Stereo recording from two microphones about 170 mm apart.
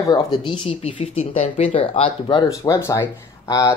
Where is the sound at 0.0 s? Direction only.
25° left (ahead or behind).